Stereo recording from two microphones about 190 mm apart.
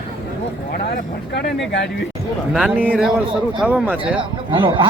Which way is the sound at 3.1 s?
5° right (ahead or behind).